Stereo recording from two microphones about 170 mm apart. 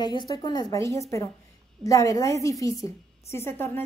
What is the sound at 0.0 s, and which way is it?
A woman's voice, 25° left (ahead or behind).